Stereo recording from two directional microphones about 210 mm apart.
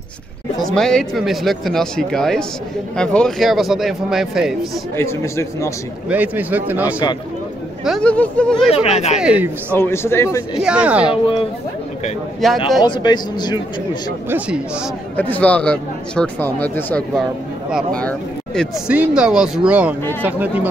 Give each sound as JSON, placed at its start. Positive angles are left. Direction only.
{"t": 0.7, "sound": "speech", "side_deg": 0}
{"t": 4.9, "sound": "speech", "side_deg": 15}
{"t": 6.0, "sound": "speech", "side_deg": -5}
{"t": 7.8, "sound": "speech", "side_deg": 0}
{"t": 8.6, "sound": "speech", "side_deg": 30}
{"t": 9.2, "sound": "speech", "side_deg": -5}
{"t": 9.8, "sound": "speech", "side_deg": 10}
{"t": 10.5, "sound": "speech", "side_deg": -5}
{"t": 12.4, "sound": "speech", "side_deg": 0}
{"t": 12.8, "sound": "speech", "side_deg": 20}
{"t": 15.1, "sound": "speech", "side_deg": 10}